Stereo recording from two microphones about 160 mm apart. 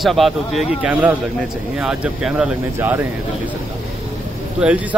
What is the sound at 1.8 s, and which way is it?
Speech, 5° right (ahead or behind).